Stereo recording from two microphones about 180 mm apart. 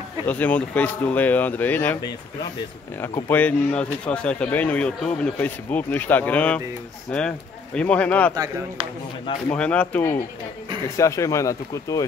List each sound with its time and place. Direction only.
0.3 s speech: 10° left (ahead or behind)
3.0 s speech: 10° left (ahead or behind)
9.5 s speech: 5° left (ahead or behind)